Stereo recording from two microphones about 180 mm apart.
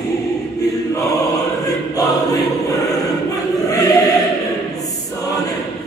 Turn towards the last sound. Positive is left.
turn(degrees=20)  # may be behind; listen again after turning